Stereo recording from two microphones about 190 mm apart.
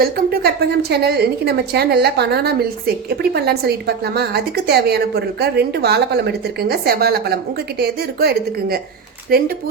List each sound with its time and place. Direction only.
0.0 s a woman's voice: 55° right (ahead or behind)